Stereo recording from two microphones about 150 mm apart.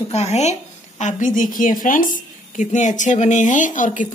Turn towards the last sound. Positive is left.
turn(degrees=60)  # may be behind; listen again after turning